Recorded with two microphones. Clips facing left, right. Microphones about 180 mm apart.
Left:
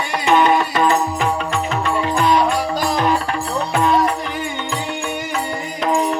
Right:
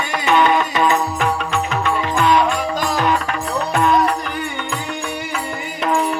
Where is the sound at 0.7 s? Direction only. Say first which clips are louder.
Left 1 dB; 40° left (ahead or behind).